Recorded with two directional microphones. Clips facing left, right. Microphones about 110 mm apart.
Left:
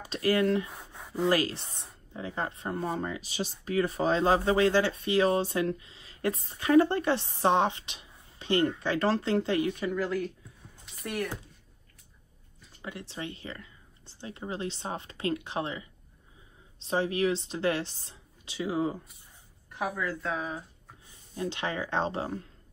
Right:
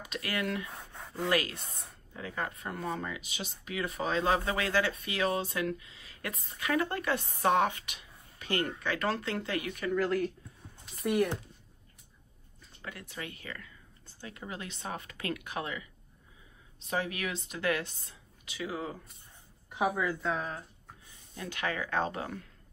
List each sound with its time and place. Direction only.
0.0 s speech: 30° left (ahead or behind)
0.7 s a sound: 20° left (ahead or behind)
1.3 s speech: 30° left (ahead or behind)
9.8 s speech: centre (ahead or behind)
12.8 s speech: 25° left (ahead or behind)
19.7 s speech: 10° right (ahead or behind)
20.2 s speech: 5° left (ahead or behind)
21.4 s speech: 25° left (ahead or behind)